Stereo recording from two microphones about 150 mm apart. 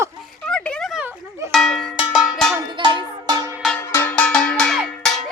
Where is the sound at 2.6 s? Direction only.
30° right (ahead or behind).